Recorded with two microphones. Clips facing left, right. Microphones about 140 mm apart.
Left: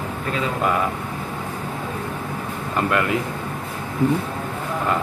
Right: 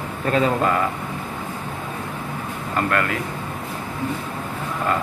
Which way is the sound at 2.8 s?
15° left (ahead or behind).